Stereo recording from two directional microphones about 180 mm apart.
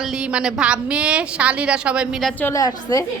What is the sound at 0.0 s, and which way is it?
A woman's voice, 5° right (ahead or behind).